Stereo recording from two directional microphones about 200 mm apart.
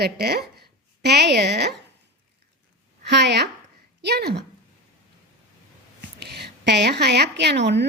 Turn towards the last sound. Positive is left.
turn(degrees=-60)  # may be behind; listen again after turning